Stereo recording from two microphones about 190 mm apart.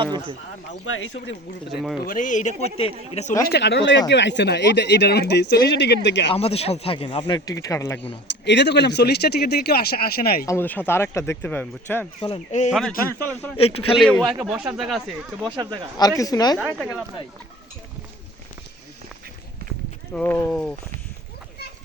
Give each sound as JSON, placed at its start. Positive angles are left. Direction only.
{"t": 0.0, "sound": "a sound", "side_deg": -25}
{"t": 0.9, "sound": "speech", "side_deg": 90}
{"t": 1.7, "sound": "speech", "side_deg": 0}
{"t": 2.0, "sound": "speech", "side_deg": 45}
{"t": 3.5, "sound": "speech", "side_deg": 65}
{"t": 6.3, "sound": "speech", "side_deg": 30}
{"t": 8.3, "sound": "speech", "side_deg": 65}
{"t": 10.4, "sound": "speech", "side_deg": 15}
{"t": 12.2, "sound": "speech", "side_deg": 35}
{"t": 13.9, "sound": "speech", "side_deg": 5}
{"t": 15.4, "sound": "speech", "side_deg": -25}
{"t": 16.0, "sound": "speech", "side_deg": 20}
{"t": 16.6, "sound": "speech", "side_deg": 0}
{"t": 20.1, "sound": "speech", "side_deg": 10}